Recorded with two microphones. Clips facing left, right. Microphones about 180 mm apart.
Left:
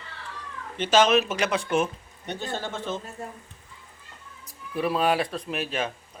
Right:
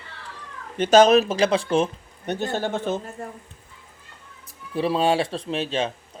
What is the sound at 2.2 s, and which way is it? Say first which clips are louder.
Speech: right 6 dB; 50° right (ahead or behind).